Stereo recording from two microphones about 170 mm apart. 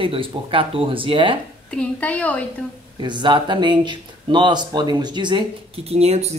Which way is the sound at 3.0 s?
25° right (ahead or behind).